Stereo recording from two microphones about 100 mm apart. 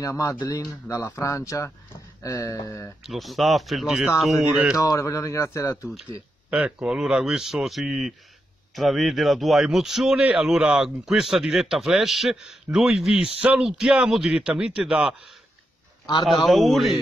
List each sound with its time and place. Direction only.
0.0 s speech: 35° left (ahead or behind)
3.0 s a man's voice: centre (ahead or behind)
4.7 s speech: 35° left (ahead or behind)
6.5 s a man's voice: 10° right (ahead or behind)
16.3 s a man's voice: centre (ahead or behind)